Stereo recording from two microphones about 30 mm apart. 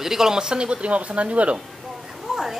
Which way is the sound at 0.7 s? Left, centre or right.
Right.